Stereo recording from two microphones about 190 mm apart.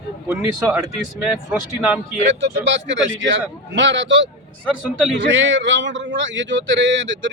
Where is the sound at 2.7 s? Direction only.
75° right (ahead or behind).